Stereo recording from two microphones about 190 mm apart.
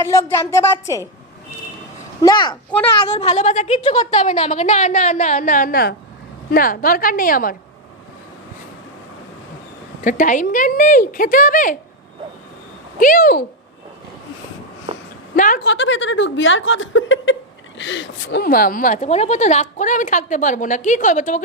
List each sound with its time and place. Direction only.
0.0 s speech: 15° left (ahead or behind)
2.2 s a child's voice: 25° left (ahead or behind); by 7.5 s 45° left (ahead or behind)
10.0 s speech: 45° left (ahead or behind)
13.0 s speech: 45° left (ahead or behind)
14.9 s a sound: 35° right (ahead or behind)
15.5 s speech: 70° left (ahead or behind); by 17.3 s 90° left
17.7 s speech: 75° left (ahead or behind); by 21.4 s 40° left (ahead or behind)